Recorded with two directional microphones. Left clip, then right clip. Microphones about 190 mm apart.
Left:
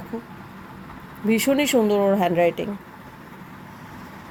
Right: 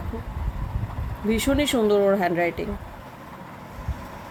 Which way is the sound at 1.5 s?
10° left (ahead or behind).